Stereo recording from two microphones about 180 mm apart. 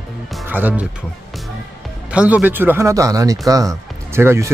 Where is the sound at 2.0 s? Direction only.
10° right (ahead or behind).